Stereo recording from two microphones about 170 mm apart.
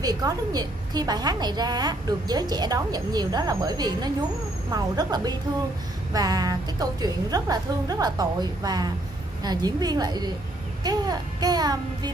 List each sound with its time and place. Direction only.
0.0 s a woman's voice: 20° right (ahead or behind)